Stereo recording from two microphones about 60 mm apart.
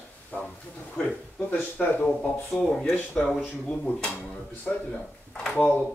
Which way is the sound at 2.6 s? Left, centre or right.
Centre.